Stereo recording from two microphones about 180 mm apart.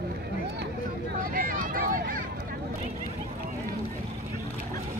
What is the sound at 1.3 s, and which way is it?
Vehicle, 50° right (ahead or behind).